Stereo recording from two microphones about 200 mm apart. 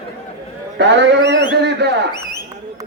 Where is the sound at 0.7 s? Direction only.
60° right (ahead or behind).